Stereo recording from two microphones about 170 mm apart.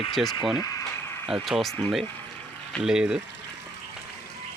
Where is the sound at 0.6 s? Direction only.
20° left (ahead or behind).